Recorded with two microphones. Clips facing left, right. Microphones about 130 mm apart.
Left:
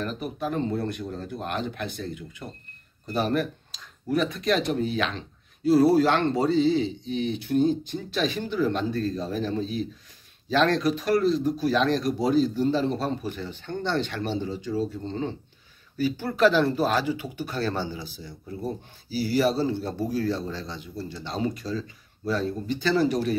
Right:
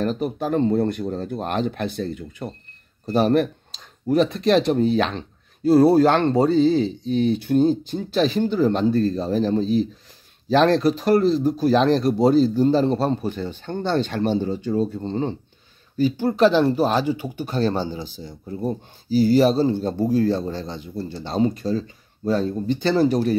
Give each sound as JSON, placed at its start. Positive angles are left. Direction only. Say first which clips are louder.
{"t": 0.0, "sound": "speech", "louder": "right 7 dB", "side_deg": -35}
{"t": 14.3, "sound": "speech", "louder": "right 6 dB", "side_deg": -50}
{"t": 14.8, "sound": "speech", "louder": "right 4 dB", "side_deg": -35}
{"t": 16.3, "sound": "speech", "louder": "right 3 dB", "side_deg": -20}